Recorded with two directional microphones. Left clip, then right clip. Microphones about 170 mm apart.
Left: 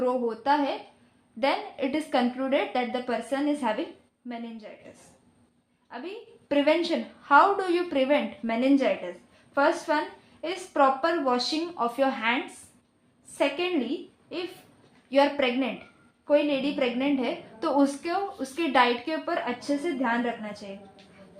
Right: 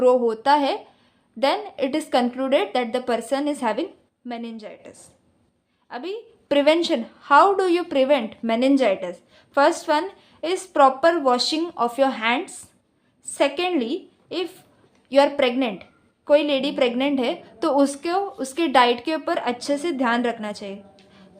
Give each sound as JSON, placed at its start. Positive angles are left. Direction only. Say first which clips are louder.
{"t": 0.0, "sound": "a woman's voice", "louder": "right 9 dB", "side_deg": -40}
{"t": 5.9, "sound": "a woman's voice", "louder": "right 7 dB", "side_deg": -35}
{"t": 15.1, "sound": "a woman's voice", "louder": "right 5 dB", "side_deg": -30}